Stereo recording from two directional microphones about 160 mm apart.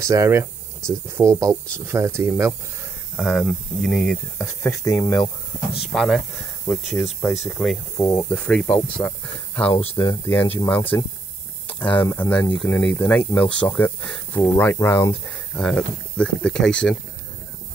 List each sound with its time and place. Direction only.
0.0 s speech: 15° right (ahead or behind)
3.2 s speech: centre (ahead or behind)
4.4 s speech: 15° left (ahead or behind)
5.8 s speech: centre (ahead or behind)
8.0 s speech: 15° left (ahead or behind)
9.0 s speech: 20° left (ahead or behind)
9.7 s speech: 35° left (ahead or behind)
10.2 s speech: 10° left (ahead or behind)
15.5 s speech: 5° left (ahead or behind)